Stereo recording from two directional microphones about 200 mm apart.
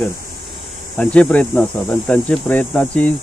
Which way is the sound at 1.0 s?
5° left (ahead or behind).